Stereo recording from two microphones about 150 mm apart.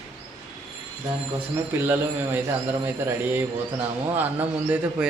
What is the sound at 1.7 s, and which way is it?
Speech, 15° right (ahead or behind).